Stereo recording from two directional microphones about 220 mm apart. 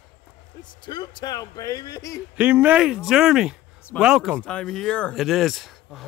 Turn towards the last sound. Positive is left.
turn(degrees=0)  # may be behind; listen again after turning